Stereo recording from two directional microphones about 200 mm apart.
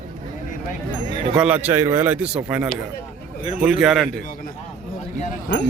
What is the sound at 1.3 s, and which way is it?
A man's voice, 5° right (ahead or behind).